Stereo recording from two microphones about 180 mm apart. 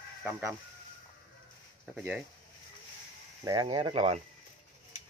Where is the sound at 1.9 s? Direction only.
5° right (ahead or behind).